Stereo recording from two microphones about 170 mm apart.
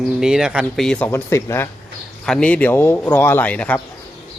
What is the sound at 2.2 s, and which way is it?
Speech, 5° left (ahead or behind).